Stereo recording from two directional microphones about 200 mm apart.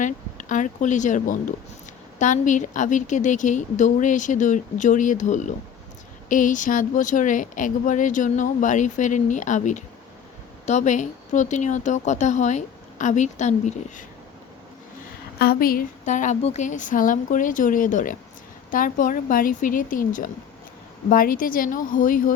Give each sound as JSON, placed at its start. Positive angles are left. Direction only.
{"t": 0.0, "sound": "speech", "side_deg": 40}
{"t": 15.4, "sound": "speech", "side_deg": 50}